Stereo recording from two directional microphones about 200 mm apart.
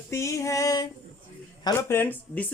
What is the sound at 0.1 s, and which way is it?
Speech, 15° left (ahead or behind).